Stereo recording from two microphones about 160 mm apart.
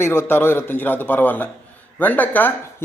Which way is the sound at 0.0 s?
15° left (ahead or behind).